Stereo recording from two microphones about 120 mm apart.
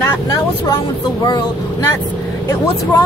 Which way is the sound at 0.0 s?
30° left (ahead or behind).